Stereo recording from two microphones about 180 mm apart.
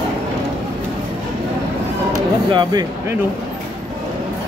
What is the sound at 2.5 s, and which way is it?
Speech, 25° right (ahead or behind).